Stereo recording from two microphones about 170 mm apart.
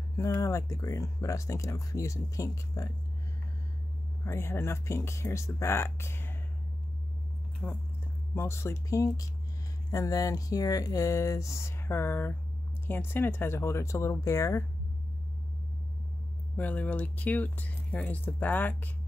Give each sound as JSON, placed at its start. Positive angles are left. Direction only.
{"t": 0.1, "sound": "speech", "side_deg": 20}
{"t": 4.2, "sound": "speech", "side_deg": 15}
{"t": 7.6, "sound": "speech", "side_deg": 10}
{"t": 16.5, "sound": "speech", "side_deg": 10}